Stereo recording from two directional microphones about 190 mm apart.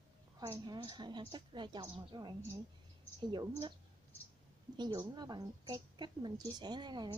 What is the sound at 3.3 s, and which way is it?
Speech, 20° right (ahead or behind).